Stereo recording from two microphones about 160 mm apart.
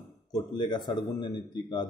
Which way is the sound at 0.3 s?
30° left (ahead or behind).